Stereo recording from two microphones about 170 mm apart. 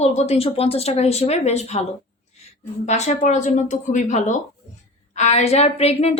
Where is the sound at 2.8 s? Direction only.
40° left (ahead or behind).